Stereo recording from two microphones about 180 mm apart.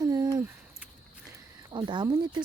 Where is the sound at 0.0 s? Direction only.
20° right (ahead or behind).